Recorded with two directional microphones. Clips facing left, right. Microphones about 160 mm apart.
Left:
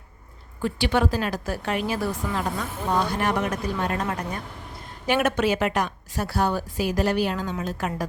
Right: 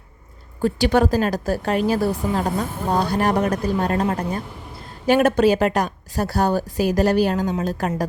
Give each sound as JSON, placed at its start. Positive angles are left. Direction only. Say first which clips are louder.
{"t": 0.6, "sound": "a woman's voice", "louder": "right 5 dB", "side_deg": -40}